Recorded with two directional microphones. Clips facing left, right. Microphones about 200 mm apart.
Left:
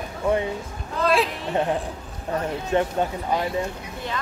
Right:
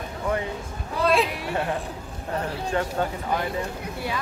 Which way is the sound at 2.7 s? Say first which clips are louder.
Left 5 dB; 20° left (ahead or behind).